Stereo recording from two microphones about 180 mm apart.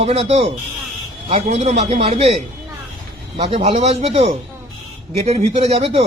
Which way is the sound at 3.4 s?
35° right (ahead or behind).